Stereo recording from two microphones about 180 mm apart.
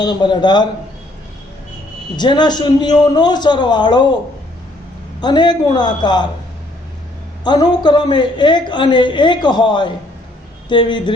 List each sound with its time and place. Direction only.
0.0 s a woman's voice: 25° left (ahead or behind)
2.1 s a woman's voice: 25° left (ahead or behind)
5.2 s a woman's voice: 25° left (ahead or behind)
7.4 s a woman's voice: 25° left (ahead or behind)